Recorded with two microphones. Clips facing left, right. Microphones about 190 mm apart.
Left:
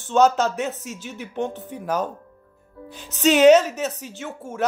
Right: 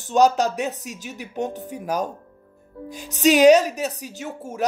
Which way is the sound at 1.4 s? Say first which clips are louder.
Even; 40° right (ahead or behind).